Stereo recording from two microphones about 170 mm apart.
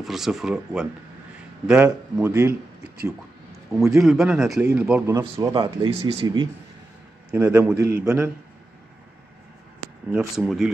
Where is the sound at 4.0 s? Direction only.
Centre (ahead or behind).